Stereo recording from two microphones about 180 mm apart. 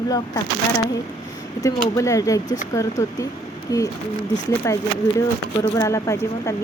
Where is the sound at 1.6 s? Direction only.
15° left (ahead or behind).